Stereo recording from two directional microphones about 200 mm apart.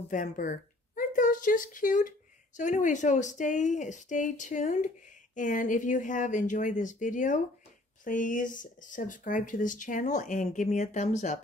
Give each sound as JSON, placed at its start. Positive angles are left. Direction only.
{"t": 0.1, "sound": "speech", "side_deg": 40}